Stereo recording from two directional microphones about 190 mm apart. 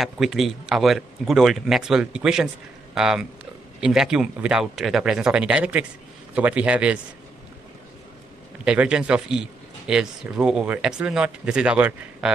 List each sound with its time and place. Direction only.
0.0 s a man's voice: centre (ahead or behind)
8.6 s speech: 5° right (ahead or behind)